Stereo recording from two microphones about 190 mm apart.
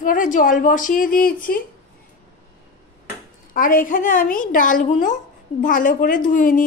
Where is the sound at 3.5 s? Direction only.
45° left (ahead or behind).